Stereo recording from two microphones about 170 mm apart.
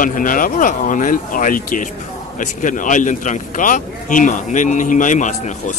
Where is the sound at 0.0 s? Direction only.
50° left (ahead or behind).